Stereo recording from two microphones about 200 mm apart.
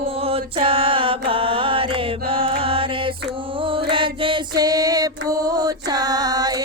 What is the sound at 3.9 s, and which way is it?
Music, 25° right (ahead or behind).